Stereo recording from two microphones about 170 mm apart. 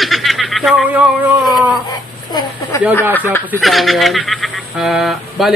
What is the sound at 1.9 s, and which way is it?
Speech, 25° left (ahead or behind).